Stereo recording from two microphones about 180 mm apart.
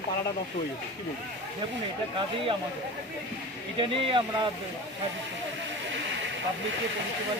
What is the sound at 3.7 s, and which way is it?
Speech, 30° right (ahead or behind).